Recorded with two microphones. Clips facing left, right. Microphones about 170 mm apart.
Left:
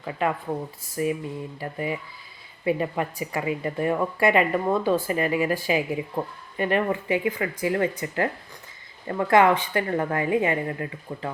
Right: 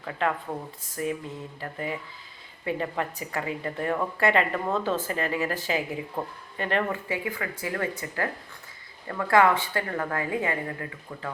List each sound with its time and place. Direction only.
0.0 s a woman's voice: 10° left (ahead or behind)